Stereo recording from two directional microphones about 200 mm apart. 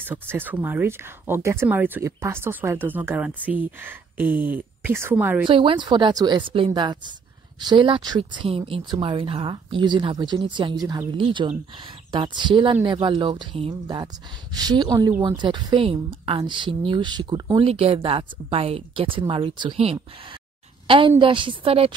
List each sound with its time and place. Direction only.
0.0 s speech: 10° right (ahead or behind)
5.5 s a woman's voice: 25° right (ahead or behind)